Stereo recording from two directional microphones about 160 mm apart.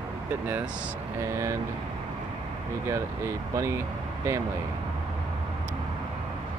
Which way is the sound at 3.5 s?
15° right (ahead or behind).